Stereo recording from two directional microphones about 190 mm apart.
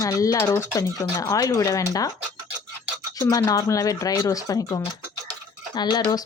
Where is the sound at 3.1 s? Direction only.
15° left (ahead or behind).